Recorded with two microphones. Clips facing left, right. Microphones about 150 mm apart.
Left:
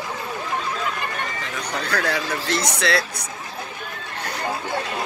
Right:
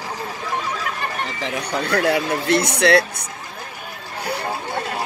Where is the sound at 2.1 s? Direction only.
60° right (ahead or behind).